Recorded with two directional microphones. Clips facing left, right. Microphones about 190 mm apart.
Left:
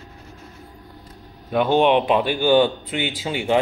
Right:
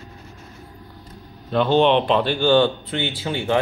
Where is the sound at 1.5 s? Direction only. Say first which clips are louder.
Even; 15° left (ahead or behind).